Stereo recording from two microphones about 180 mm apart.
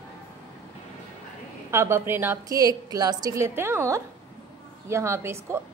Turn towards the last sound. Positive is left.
turn(degrees=-15)  # may be behind; listen again after turning